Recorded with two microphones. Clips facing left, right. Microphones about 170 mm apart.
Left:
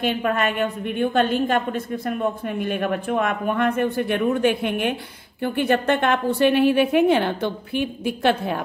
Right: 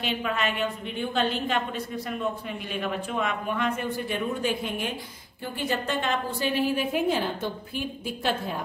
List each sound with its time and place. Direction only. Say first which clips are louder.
0.0 s a woman's voice: left 6 dB; 50° left (ahead or behind); by 8.5 s 70° left (ahead or behind)